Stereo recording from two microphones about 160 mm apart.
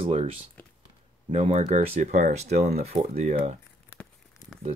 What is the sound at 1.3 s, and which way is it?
Speech, 45° right (ahead or behind).